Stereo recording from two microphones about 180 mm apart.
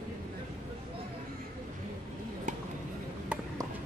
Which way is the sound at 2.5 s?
45° right (ahead or behind).